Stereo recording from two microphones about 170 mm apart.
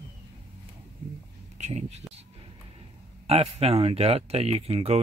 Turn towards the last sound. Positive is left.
turn(degrees=-35)  # may be behind; listen again after turning